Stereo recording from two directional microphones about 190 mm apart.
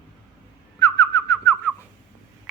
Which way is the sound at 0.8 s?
20° left (ahead or behind).